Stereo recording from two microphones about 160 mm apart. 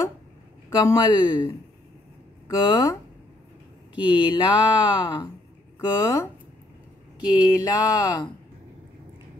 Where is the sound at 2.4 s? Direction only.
20° left (ahead or behind).